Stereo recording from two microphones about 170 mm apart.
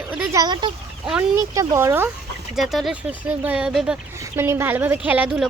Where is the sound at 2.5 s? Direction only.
Centre (ahead or behind).